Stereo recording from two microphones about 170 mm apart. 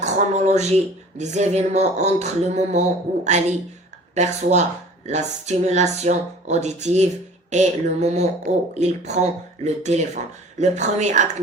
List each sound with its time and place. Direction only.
0.0 s speech: 40° right (ahead or behind)